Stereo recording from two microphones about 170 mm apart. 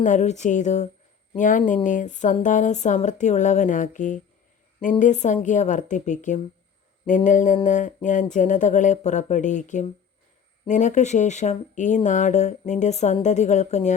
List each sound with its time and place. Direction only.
0.0 s speech: 45° left (ahead or behind)